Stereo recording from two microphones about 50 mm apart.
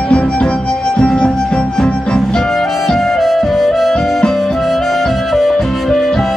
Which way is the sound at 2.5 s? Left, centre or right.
Centre.